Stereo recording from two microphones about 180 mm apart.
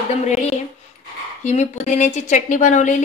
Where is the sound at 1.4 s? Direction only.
40° left (ahead or behind).